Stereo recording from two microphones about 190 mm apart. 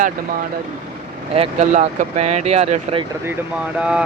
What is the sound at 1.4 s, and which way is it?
Speech, 35° right (ahead or behind).